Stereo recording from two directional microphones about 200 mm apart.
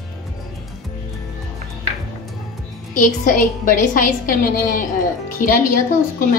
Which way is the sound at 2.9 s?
40° left (ahead or behind).